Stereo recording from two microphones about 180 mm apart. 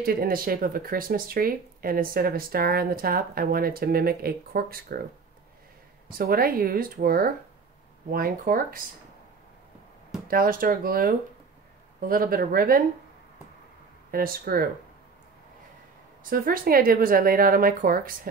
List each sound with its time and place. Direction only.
0.0 s speech: 55° right (ahead or behind)
6.0 s speech: 55° right (ahead or behind)
10.2 s speech: 50° right (ahead or behind)
14.1 s speech: 55° right (ahead or behind)
16.3 s speech: 55° right (ahead or behind)